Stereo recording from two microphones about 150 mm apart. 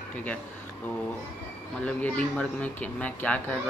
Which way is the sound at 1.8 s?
10° left (ahead or behind).